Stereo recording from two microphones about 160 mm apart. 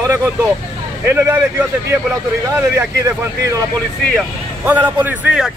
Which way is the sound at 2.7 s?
15° right (ahead or behind).